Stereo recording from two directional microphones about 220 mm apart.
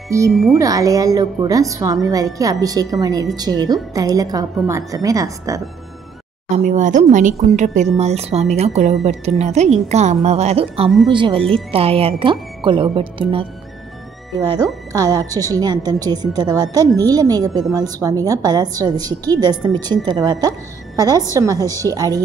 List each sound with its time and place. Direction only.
0.3 s speech: centre (ahead or behind)
0.6 s a woman's voice: 15° right (ahead or behind)
6.5 s speech: 35° right (ahead or behind)
14.5 s a woman's voice: 15° right (ahead or behind)